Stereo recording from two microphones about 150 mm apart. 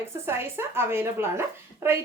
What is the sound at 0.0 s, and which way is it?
Speech, 15° right (ahead or behind).